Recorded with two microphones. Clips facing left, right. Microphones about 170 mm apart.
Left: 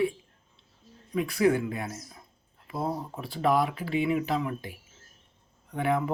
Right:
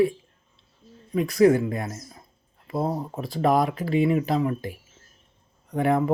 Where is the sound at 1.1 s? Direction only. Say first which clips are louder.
Right 6 dB; 40° right (ahead or behind).